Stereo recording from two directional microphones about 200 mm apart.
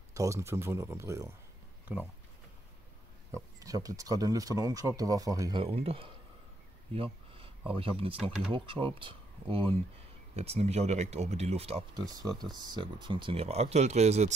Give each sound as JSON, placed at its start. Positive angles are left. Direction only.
{"t": 0.1, "sound": "speech", "side_deg": -15}
{"t": 3.3, "sound": "speech", "side_deg": -15}